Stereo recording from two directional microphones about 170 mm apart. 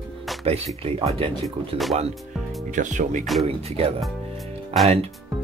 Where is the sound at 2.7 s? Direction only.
45° right (ahead or behind).